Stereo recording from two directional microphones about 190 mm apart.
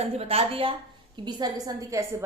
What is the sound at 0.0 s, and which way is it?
A woman's voice, 30° right (ahead or behind).